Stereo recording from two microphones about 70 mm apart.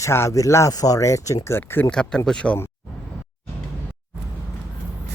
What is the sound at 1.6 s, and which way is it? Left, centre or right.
Speech, left.